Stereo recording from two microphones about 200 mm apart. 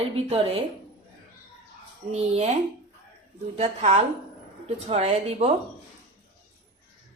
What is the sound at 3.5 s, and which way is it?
Speech, 35° right (ahead or behind).